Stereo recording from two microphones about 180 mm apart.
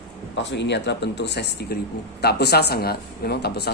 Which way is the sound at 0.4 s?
75° left (ahead or behind).